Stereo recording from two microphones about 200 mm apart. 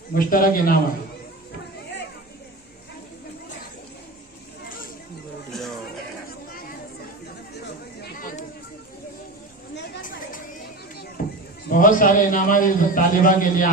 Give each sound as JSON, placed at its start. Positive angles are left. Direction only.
{"t": 0.1, "sound": "a man's voice", "side_deg": 45}
{"t": 5.5, "sound": "music", "side_deg": 0}
{"t": 8.0, "sound": "a sound", "side_deg": 45}
{"t": 11.2, "sound": "sheep", "side_deg": 45}
{"t": 11.7, "sound": "a man's voice", "side_deg": 45}